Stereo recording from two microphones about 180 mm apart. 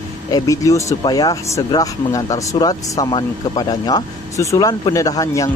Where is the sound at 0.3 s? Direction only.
20° left (ahead or behind).